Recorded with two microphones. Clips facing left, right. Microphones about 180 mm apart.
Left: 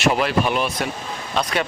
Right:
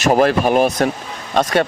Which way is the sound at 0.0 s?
45° right (ahead or behind).